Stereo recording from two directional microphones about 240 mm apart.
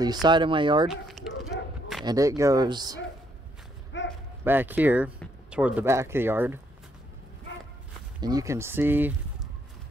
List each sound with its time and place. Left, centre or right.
0.0 s speech: centre
0.8 s a sound: centre
2.0 s speech: centre
3.9 s a sound: left
4.5 s speech: centre
8.2 s speech: centre